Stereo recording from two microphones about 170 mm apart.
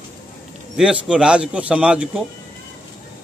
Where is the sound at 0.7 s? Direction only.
5° right (ahead or behind).